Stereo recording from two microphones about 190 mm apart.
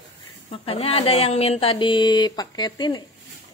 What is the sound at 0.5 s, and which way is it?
Speech, 30° left (ahead or behind).